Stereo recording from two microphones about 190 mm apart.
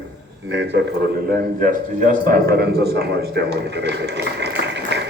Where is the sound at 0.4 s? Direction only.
65° right (ahead or behind).